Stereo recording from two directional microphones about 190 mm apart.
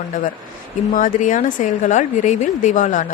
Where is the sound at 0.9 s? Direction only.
40° left (ahead or behind).